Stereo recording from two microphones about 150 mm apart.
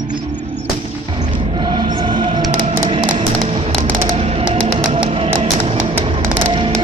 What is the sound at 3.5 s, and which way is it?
Music, 45° right (ahead or behind).